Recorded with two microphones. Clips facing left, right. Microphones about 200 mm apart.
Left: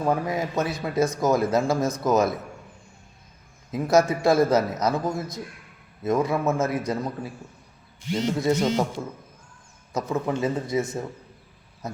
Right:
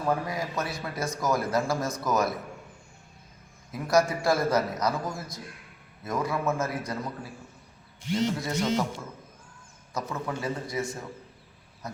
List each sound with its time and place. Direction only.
0.0 s a man's voice: 20° left (ahead or behind)
3.7 s a man's voice: 25° left (ahead or behind)
9.9 s a man's voice: 20° left (ahead or behind)